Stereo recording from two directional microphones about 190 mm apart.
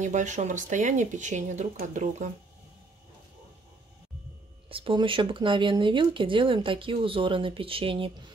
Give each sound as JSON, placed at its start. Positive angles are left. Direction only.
{"t": 0.0, "sound": "speech", "side_deg": -40}
{"t": 4.6, "sound": "speech", "side_deg": -30}